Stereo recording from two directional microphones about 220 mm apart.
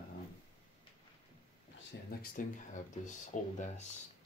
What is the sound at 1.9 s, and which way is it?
Speech, 50° left (ahead or behind).